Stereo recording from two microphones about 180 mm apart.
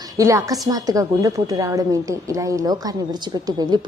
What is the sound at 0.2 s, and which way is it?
A woman's voice, 15° right (ahead or behind).